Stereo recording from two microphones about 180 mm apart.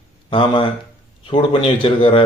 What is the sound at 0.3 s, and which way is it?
Speech, 30° left (ahead or behind).